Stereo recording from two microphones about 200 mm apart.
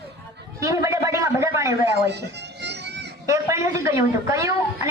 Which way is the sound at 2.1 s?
60° right (ahead or behind).